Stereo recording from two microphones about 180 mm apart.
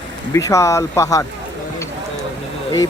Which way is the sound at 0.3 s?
15° left (ahead or behind).